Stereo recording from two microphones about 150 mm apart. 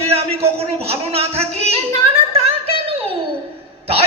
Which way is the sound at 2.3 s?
40° right (ahead or behind).